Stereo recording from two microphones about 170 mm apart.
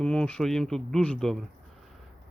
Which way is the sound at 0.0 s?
5° left (ahead or behind).